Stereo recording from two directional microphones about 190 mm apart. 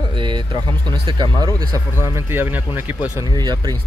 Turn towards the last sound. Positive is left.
turn(degrees=-20)  # may be behind; listen again after turning